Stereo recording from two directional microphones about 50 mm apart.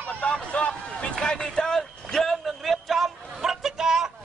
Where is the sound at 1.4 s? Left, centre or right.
Centre.